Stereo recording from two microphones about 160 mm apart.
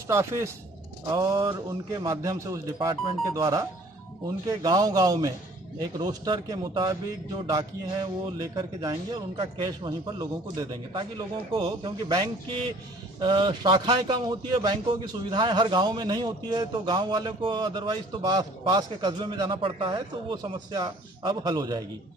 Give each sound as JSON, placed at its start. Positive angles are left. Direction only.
{"t": 0.1, "sound": "a man's voice", "side_deg": -15}
{"t": 8.4, "sound": "a man's voice", "side_deg": -25}